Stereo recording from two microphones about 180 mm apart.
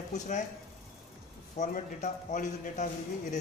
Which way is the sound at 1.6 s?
45° left (ahead or behind).